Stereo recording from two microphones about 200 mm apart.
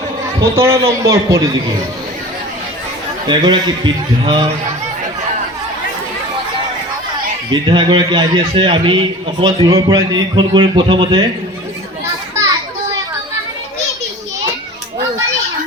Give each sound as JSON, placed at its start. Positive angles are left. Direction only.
{"t": 0.5, "sound": "a man's voice", "side_deg": -15}
{"t": 3.2, "sound": "a man's voice", "side_deg": -20}
{"t": 7.5, "sound": "a man's voice", "side_deg": -25}